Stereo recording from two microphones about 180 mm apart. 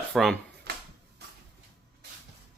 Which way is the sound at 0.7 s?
65° right (ahead or behind).